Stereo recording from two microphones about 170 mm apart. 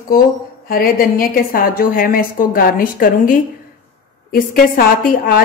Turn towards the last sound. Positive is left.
turn(degrees=55)  # may be behind; listen again after turning